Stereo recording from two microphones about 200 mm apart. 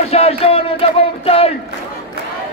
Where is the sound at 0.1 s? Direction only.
30° left (ahead or behind).